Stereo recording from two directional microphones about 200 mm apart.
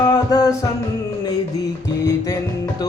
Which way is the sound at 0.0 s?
20° left (ahead or behind).